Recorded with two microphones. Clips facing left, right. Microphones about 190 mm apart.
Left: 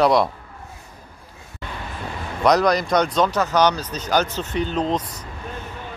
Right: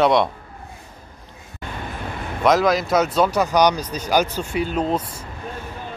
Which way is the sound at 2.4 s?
Centre (ahead or behind).